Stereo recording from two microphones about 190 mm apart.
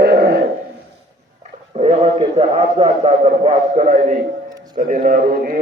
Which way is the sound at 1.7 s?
35° right (ahead or behind).